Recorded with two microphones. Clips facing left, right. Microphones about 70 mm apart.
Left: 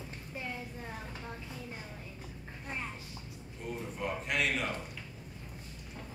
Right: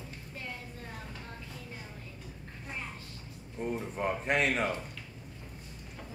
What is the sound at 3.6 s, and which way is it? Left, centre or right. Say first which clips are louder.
A man's voice: right 5 dB; right.